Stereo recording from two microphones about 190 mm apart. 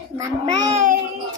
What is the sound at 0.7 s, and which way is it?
Speech, 40° right (ahead or behind).